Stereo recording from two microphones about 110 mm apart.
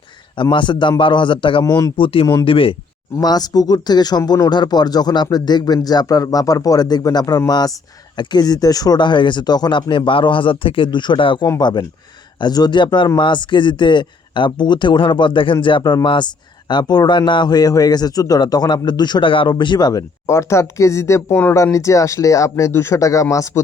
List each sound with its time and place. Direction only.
0.5 s speech: 45° left (ahead or behind)
1.6 s a man's voice: 30° left (ahead or behind)
2.0 s speech: 55° left (ahead or behind)
3.2 s a man's voice: 35° left (ahead or behind)